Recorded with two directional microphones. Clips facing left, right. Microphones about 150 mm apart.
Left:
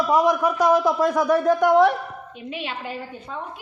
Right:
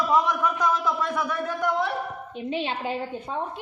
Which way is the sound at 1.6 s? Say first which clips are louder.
Left 8 dB; 75° left (ahead or behind).